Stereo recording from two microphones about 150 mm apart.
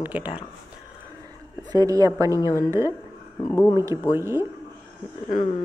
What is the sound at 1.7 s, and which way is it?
Speech, 25° right (ahead or behind).